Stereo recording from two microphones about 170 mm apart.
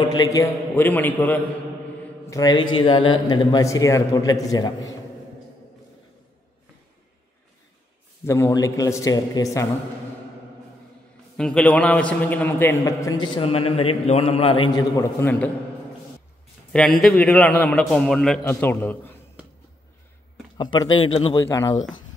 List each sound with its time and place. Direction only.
0.0 s a man's voice: 20° left (ahead or behind)
2.2 s a man's voice: 20° left (ahead or behind)
8.3 s a man's voice: 15° left (ahead or behind)
11.3 s a man's voice: 5° left (ahead or behind); by 13.3 s 20° left (ahead or behind)
13.4 s a man's voice: 35° left (ahead or behind); by 15.5 s 10° left (ahead or behind)
17.0 s a man's voice: 5° left (ahead or behind)
18.4 s a man's voice: 15° left (ahead or behind)
20.5 s a man's voice: 25° left (ahead or behind)
21.4 s a man's voice: 20° left (ahead or behind)